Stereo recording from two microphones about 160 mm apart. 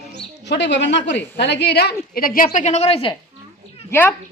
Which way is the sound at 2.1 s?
65° left (ahead or behind).